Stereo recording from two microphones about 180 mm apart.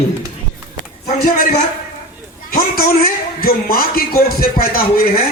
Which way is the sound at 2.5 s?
55° left (ahead or behind).